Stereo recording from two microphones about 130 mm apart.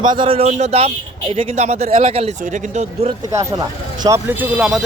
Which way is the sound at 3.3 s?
25° right (ahead or behind).